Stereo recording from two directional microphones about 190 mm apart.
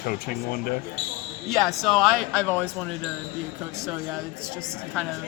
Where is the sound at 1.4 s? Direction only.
Centre (ahead or behind).